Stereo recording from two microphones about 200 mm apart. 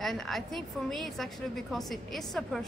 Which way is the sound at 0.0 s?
Centre (ahead or behind).